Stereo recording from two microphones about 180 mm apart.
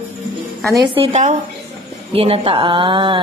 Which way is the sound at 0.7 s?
25° right (ahead or behind).